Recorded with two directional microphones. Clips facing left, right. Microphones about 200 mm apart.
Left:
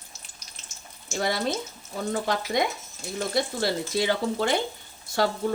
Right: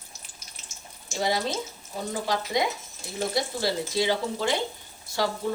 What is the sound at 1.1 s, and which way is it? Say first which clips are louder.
A woman's voice: even; 55° left (ahead or behind).